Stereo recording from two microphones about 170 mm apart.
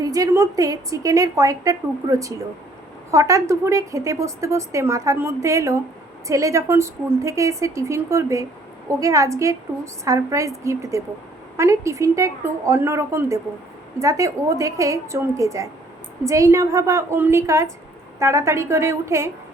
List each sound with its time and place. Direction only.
0.0 s a woman's voice: 20° right (ahead or behind)